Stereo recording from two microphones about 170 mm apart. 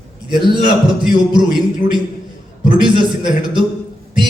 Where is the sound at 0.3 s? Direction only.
25° right (ahead or behind).